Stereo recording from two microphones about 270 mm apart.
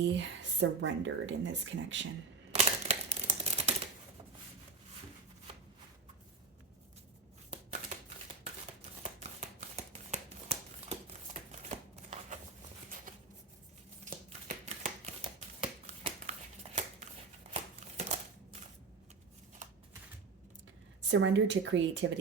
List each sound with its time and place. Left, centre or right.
0.0 s speech: right
2.5 s camera: right
7.5 s a sound: right
9.6 s shuffling cards: right
14.0 s shuffling cards: right
17.5 s a sound: right
21.1 s speech: right